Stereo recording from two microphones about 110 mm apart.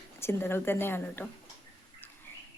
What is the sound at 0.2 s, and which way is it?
Speech, 20° left (ahead or behind).